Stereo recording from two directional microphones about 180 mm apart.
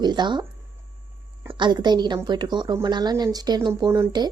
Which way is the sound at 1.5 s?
25° right (ahead or behind).